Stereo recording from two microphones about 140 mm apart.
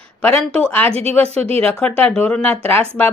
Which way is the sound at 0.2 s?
5° left (ahead or behind).